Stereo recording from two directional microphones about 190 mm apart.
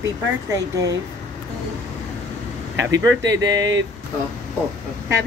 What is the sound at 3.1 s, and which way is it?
Speech, 70° right (ahead or behind).